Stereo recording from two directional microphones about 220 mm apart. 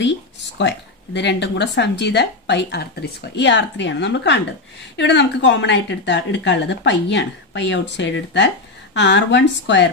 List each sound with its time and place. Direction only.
0.6 s speech: 50° left (ahead or behind)